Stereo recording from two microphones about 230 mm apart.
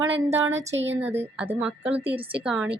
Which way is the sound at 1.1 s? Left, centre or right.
Centre.